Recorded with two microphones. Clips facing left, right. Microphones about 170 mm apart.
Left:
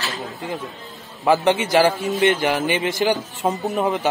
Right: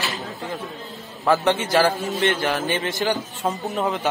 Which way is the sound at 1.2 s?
20° left (ahead or behind).